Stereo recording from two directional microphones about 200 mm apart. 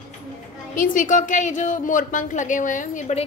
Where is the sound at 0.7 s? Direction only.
40° left (ahead or behind).